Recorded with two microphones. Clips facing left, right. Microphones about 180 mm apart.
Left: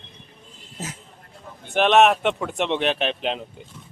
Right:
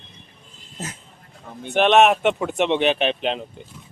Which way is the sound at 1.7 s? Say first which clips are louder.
Right 1 dB; centre (ahead or behind).